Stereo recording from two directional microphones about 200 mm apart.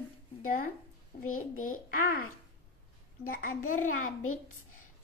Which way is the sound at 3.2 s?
45° left (ahead or behind).